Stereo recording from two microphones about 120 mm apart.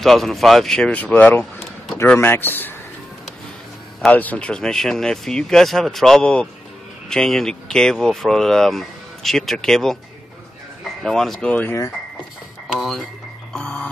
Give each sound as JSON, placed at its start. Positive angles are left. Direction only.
{"t": 0.0, "sound": "speech", "side_deg": 0}
{"t": 1.4, "sound": "a sound", "side_deg": 0}
{"t": 2.1, "sound": "speech", "side_deg": 20}
{"t": 4.1, "sound": "speech", "side_deg": 10}
{"t": 13.5, "sound": "music", "side_deg": 5}